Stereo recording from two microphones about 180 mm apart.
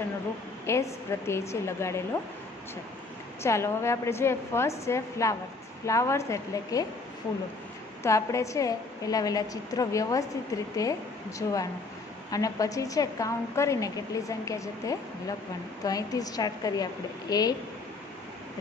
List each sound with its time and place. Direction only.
0.7 s a woman's voice: 15° left (ahead or behind)
3.4 s a woman's voice: 15° left (ahead or behind)
8.0 s a woman's voice: 15° left (ahead or behind)